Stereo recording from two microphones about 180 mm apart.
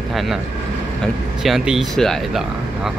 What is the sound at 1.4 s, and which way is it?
Speech, centre (ahead or behind).